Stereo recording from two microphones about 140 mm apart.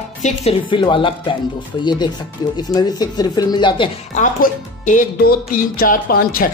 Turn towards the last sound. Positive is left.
turn(degrees=90)